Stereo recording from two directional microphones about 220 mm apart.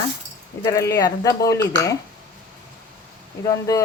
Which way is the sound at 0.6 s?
15° left (ahead or behind).